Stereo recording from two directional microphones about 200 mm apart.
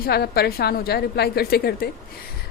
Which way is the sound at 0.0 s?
50° left (ahead or behind).